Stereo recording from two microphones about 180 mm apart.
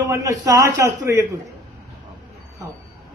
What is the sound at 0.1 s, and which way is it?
A man's voice, 20° right (ahead or behind).